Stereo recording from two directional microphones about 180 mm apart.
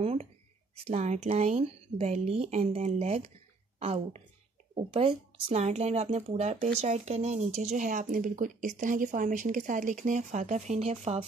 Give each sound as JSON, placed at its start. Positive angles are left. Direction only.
{"t": 0.0, "sound": "speech", "side_deg": -35}